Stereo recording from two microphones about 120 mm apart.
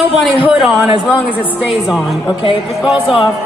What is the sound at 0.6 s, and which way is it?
A man's voice, centre (ahead or behind).